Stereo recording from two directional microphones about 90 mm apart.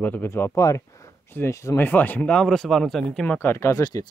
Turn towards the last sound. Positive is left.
turn(degrees=45)  # may be behind; listen again after turning